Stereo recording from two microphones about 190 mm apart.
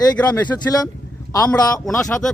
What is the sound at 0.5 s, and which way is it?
A man's voice, 15° left (ahead or behind).